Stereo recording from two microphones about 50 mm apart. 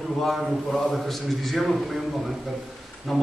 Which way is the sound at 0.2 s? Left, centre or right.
Centre.